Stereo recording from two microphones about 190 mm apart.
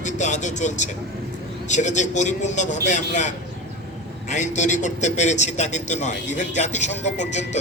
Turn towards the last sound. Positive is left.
turn(degrees=35)  # may be behind; listen again after turning